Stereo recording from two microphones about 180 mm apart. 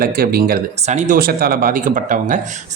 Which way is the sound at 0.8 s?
40° right (ahead or behind).